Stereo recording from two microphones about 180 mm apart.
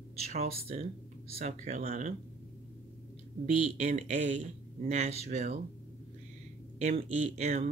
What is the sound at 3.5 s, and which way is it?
Speech, 40° right (ahead or behind).